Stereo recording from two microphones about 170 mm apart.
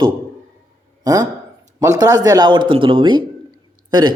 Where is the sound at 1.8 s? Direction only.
20° right (ahead or behind).